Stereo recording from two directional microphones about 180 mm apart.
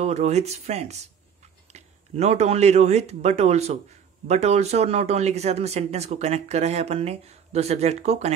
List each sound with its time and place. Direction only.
0.0 s speech: 35° right (ahead or behind)